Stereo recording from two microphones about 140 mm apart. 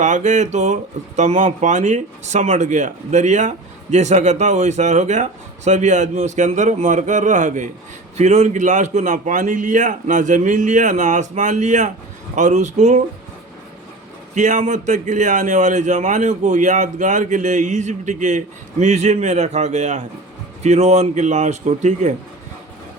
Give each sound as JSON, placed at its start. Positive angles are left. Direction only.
{"t": 0.0, "sound": "speech", "side_deg": -60}
{"t": 14.3, "sound": "speech", "side_deg": -60}